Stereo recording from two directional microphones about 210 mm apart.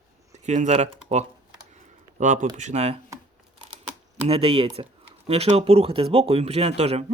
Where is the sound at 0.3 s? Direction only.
35° right (ahead or behind).